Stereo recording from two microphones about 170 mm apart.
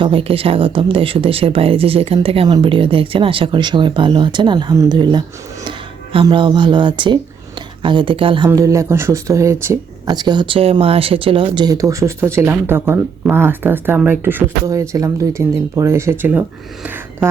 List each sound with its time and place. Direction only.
0.0 s speech: 30° right (ahead or behind)
6.2 s speech: 25° right (ahead or behind)
8.4 s speech: 20° right (ahead or behind)